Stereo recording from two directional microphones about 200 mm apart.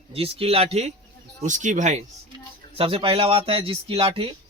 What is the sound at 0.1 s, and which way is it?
A man's voice, 30° right (ahead or behind).